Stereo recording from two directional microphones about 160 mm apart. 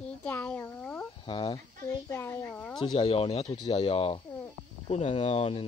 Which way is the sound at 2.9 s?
35° left (ahead or behind).